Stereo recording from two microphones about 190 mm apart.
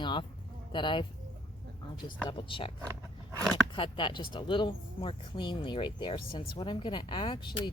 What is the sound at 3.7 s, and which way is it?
Speech, 25° left (ahead or behind).